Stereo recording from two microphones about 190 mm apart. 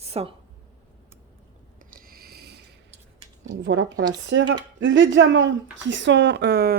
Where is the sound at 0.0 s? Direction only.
30° right (ahead or behind).